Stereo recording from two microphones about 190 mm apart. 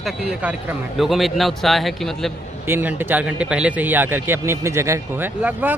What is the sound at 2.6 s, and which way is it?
Speech, 10° right (ahead or behind).